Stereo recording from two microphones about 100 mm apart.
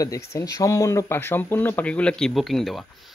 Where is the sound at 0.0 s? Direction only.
30° left (ahead or behind).